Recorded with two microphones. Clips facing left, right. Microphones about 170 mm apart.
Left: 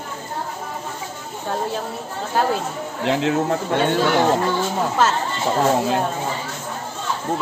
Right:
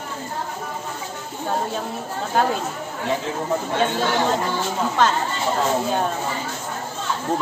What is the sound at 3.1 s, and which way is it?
Speech, 80° left.